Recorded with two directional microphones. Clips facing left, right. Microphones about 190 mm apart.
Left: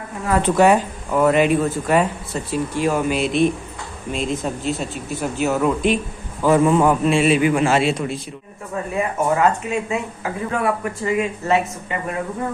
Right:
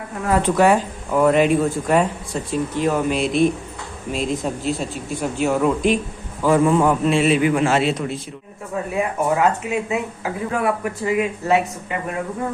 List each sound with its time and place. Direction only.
0.4 s a man's voice: 20° left (ahead or behind)
1.1 s speech: centre (ahead or behind)
6.4 s a man's voice: 20° left (ahead or behind)
8.9 s speech: 10° right (ahead or behind)